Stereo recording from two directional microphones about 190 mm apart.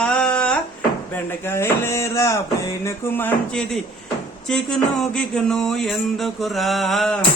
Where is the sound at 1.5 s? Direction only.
15° left (ahead or behind).